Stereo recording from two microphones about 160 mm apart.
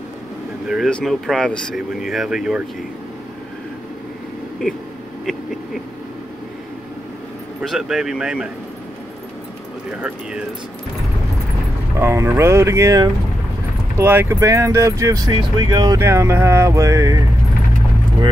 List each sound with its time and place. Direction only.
0.7 s speech: centre (ahead or behind)
7.7 s speech: centre (ahead or behind)
9.8 s speech: 5° right (ahead or behind)
12.0 s speech: 15° right (ahead or behind)